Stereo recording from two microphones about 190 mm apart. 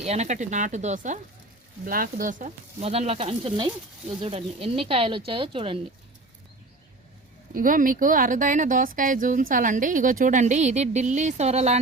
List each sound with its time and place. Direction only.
0.0 s speech: 35° right (ahead or behind)
7.5 s speech: 45° right (ahead or behind)